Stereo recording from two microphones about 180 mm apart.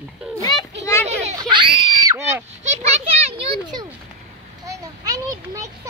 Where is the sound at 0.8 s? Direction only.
15° left (ahead or behind).